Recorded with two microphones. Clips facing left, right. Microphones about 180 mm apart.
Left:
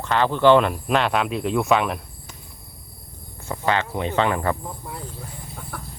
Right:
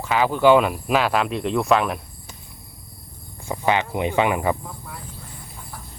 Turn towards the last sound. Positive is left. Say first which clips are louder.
# right 1 dB
turn(degrees=-10)  # may be behind; listen again after turning